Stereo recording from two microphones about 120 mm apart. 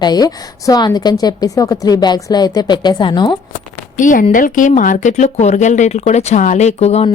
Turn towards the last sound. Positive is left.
turn(degrees=60)  # may be behind; listen again after turning